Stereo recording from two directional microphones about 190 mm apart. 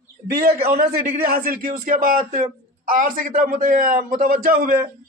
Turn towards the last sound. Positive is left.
turn(degrees=-50)  # may be behind; listen again after turning